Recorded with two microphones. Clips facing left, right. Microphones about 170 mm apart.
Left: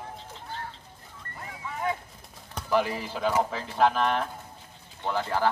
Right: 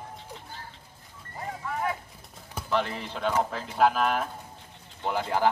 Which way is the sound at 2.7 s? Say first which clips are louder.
Left 3 dB; 10° left (ahead or behind).